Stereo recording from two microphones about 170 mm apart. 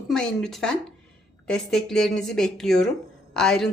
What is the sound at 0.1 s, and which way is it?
A woman's voice, 5° left (ahead or behind).